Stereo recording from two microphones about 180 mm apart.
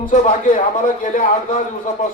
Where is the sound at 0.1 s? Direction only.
40° left (ahead or behind).